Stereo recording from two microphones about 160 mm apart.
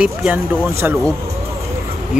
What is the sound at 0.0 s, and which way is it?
Speech, 5° right (ahead or behind).